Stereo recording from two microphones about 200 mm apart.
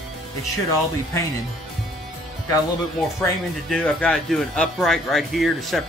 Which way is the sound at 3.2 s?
5° left (ahead or behind).